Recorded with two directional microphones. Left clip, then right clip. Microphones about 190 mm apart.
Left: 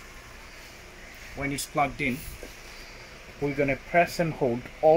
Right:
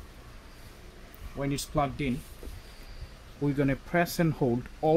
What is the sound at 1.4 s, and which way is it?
Speech, 45° right (ahead or behind).